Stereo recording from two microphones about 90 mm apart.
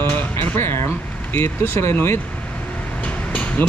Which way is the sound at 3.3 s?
15° left (ahead or behind).